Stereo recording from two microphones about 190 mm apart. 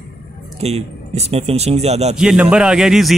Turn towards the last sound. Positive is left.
turn(degrees=0)  # may be behind; listen again after turning